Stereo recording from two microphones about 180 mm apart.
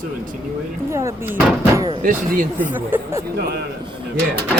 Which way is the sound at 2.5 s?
10° right (ahead or behind).